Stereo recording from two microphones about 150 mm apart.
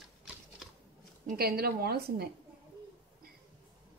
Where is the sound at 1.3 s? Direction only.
90° right.